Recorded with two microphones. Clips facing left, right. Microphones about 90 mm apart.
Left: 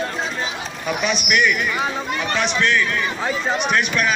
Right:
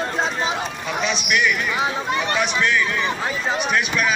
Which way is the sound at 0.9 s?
5° left (ahead or behind).